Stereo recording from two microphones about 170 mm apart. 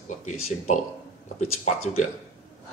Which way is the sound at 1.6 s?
40° left (ahead or behind).